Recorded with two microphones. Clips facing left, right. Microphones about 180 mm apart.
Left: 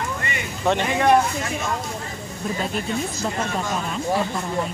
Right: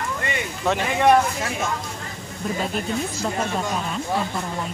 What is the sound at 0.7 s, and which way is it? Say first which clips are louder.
Speech: even; centre (ahead or behind).